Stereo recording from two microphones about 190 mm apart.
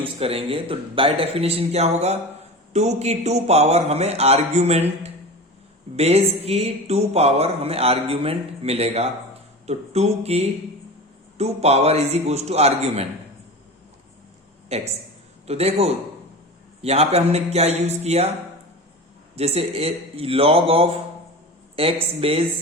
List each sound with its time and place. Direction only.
0.0 s speech: 30° right (ahead or behind)
14.7 s speech: 35° right (ahead or behind)
19.4 s speech: 30° right (ahead or behind)